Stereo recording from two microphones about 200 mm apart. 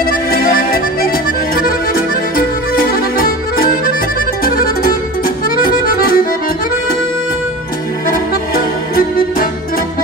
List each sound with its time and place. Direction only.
0.0 s music: 45° left (ahead or behind)
5.6 s accordion: 45° left (ahead or behind)
8.1 s music: 45° left (ahead or behind)